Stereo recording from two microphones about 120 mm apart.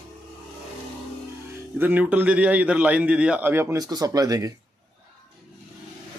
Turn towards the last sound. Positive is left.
turn(degrees=-30)  # may be behind; listen again after turning